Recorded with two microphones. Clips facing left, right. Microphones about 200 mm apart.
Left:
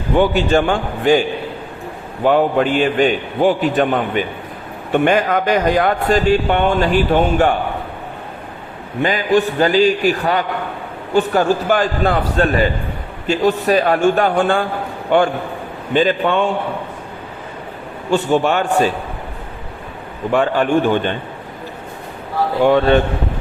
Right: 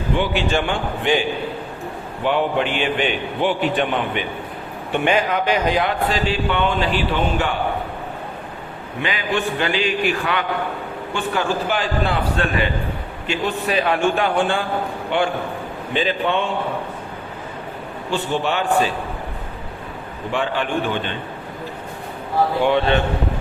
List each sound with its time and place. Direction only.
0.1 s a man's voice: 45° left (ahead or behind)
2.2 s a man's voice: 45° left (ahead or behind)
9.0 s a man's voice: 45° left (ahead or behind)
18.1 s a man's voice: 45° left (ahead or behind)
20.3 s a man's voice: 45° left (ahead or behind)
22.6 s a man's voice: 45° left (ahead or behind)